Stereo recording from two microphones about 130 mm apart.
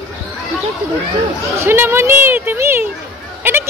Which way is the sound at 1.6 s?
20° right (ahead or behind).